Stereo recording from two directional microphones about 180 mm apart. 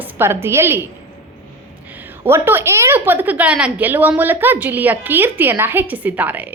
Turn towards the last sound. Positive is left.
turn(degrees=-10)  # may be behind; listen again after turning